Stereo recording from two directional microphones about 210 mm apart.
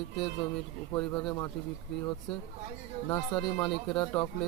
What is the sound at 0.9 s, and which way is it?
Speech, 20° left (ahead or behind).